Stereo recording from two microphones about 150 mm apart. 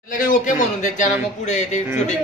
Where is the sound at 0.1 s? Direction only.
60° left (ahead or behind).